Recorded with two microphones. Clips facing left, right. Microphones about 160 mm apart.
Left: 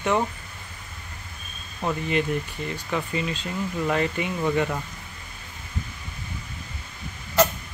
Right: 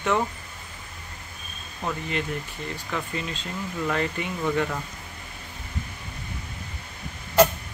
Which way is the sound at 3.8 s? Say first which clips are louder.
Left 2 dB; 10° left (ahead or behind).